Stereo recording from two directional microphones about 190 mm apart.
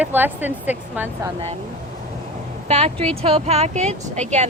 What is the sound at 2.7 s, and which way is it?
Speech, 35° right (ahead or behind).